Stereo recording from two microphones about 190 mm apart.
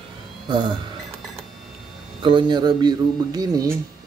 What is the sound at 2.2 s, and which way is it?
Speech, 25° right (ahead or behind).